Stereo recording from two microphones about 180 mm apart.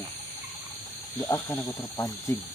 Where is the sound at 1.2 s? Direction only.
15° left (ahead or behind).